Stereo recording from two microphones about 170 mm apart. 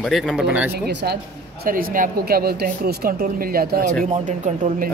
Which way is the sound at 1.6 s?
55° right (ahead or behind).